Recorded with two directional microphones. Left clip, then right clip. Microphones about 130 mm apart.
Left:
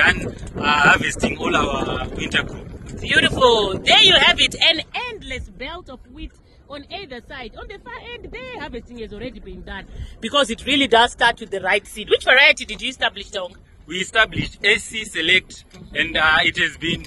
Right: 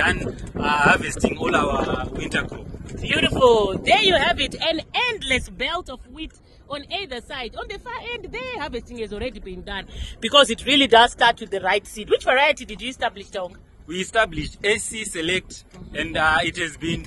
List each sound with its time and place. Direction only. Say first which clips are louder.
0.0 s a man's voice: left 5 dB; 40° right (ahead or behind); by 2.4 s 85° right
3.1 s a man's voice: left 2 dB; 15° right (ahead or behind); by 4.8 s 45° right (ahead or behind)
4.9 s speech: right 6 dB; 90° right; by 5.9 s 75° right (ahead or behind)
6.1 s a woman's voice: right 3 dB; 55° right (ahead or behind)
9.7 s a man's voice: right 3 dB; 65° right (ahead or behind)
10.6 s speech: right 1 dB; 25° right (ahead or behind)
10.9 s speech: even; centre (ahead or behind)
13.8 s a man's voice: left 3 dB; 35° right (ahead or behind)